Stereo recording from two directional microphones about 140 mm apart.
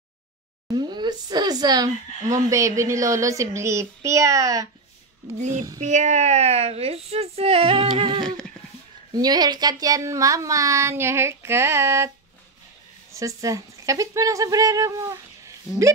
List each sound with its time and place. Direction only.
0.7 s speech: 30° right (ahead or behind)
5.4 s child singing: 60° right (ahead or behind)
5.8 s speech: 60° right (ahead or behind); by 12.1 s 20° right (ahead or behind)
13.4 s speech: 25° right (ahead or behind)